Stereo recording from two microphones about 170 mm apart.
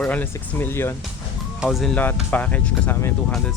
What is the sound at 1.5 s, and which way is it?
Speech, 5° right (ahead or behind).